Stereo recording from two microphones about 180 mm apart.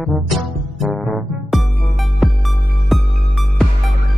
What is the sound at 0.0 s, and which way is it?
Music, centre (ahead or behind).